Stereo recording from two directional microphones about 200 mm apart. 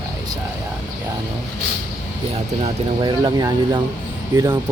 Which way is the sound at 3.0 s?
20° right (ahead or behind).